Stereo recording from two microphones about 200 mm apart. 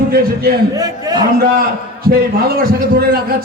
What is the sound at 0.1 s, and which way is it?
Speech, 50° right (ahead or behind).